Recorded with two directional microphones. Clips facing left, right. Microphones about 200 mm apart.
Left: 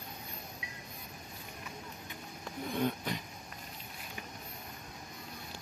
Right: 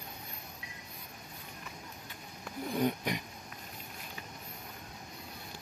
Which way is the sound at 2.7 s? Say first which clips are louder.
Right 2 dB; 10° right (ahead or behind).